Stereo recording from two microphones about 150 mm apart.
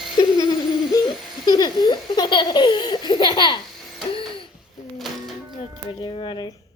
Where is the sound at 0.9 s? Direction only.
20° left (ahead or behind).